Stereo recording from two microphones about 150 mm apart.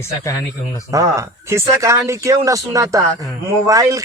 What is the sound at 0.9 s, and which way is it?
A man's voice, 20° right (ahead or behind).